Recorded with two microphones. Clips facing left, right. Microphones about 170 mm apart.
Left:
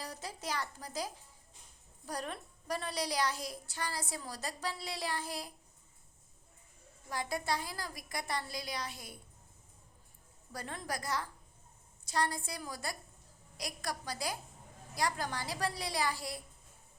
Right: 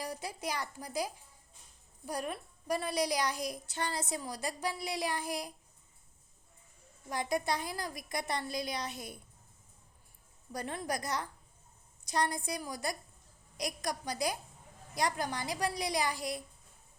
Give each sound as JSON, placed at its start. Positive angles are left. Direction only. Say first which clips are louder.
{"t": 0.0, "sound": "a woman's voice", "louder": "right 4 dB", "side_deg": -10}
{"t": 7.1, "sound": "a woman's voice", "louder": "right 3 dB", "side_deg": -20}
{"t": 10.5, "sound": "a woman's voice", "louder": "right 4 dB", "side_deg": -20}